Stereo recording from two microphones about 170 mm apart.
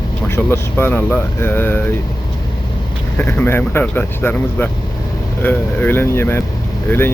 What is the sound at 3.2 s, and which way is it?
Speech, 15° left (ahead or behind).